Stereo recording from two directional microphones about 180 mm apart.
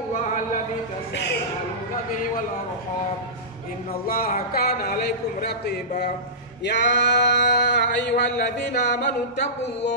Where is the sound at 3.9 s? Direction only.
55° left (ahead or behind).